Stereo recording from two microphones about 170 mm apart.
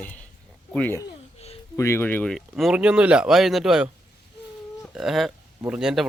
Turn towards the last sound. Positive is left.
turn(degrees=-5)  # may be behind; listen again after turning